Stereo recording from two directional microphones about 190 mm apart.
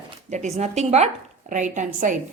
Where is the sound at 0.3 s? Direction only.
35° right (ahead or behind).